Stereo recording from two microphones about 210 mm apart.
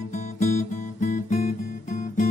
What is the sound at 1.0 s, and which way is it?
Music, 40° left (ahead or behind).